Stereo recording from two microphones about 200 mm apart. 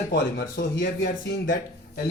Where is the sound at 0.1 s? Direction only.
50° left (ahead or behind).